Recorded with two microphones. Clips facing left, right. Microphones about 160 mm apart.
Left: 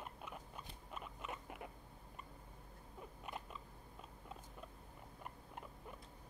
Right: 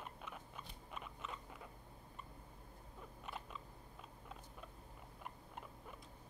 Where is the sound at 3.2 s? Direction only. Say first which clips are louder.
Even; centre (ahead or behind).